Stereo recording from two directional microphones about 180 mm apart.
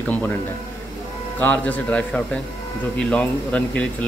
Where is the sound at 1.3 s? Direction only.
10° left (ahead or behind).